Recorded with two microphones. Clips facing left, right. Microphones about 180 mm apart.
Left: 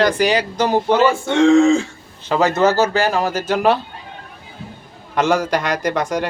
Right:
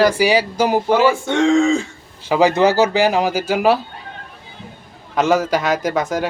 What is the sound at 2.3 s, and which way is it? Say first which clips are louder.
Speech: right 2 dB; 10° right (ahead or behind).